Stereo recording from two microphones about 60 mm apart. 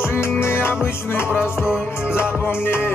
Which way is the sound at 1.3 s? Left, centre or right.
Centre.